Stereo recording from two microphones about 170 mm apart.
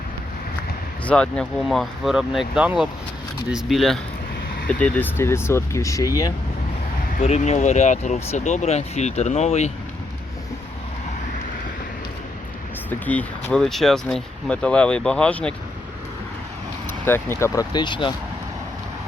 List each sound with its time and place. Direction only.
1.0 s speech: 5° left (ahead or behind)
7.2 s speech: 40° left (ahead or behind)
12.9 s speech: 10° left (ahead or behind)
17.1 s speech: 15° left (ahead or behind)